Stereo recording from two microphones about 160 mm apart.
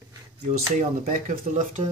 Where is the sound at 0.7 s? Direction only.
50° right (ahead or behind).